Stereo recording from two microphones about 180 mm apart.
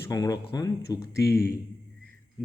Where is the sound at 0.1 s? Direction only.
20° left (ahead or behind).